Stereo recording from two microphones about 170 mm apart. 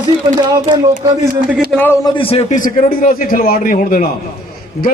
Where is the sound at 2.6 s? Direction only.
50° left (ahead or behind).